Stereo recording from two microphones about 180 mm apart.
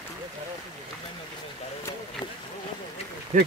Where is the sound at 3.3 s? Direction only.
40° right (ahead or behind).